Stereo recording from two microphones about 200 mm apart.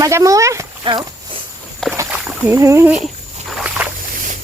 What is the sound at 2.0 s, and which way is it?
Speech, 5° right (ahead or behind).